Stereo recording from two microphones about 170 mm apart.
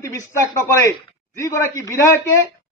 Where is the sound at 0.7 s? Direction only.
15° left (ahead or behind).